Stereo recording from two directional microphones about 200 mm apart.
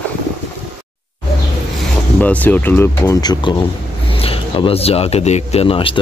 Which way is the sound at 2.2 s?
10° left (ahead or behind).